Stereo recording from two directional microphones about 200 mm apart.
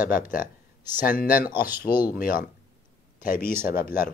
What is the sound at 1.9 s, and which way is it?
Speech, 10° right (ahead or behind).